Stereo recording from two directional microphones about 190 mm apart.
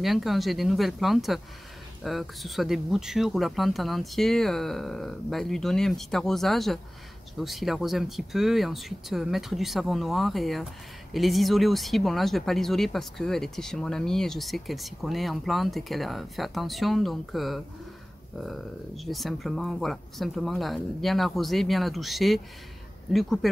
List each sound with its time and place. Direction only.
0.0 s speech: centre (ahead or behind)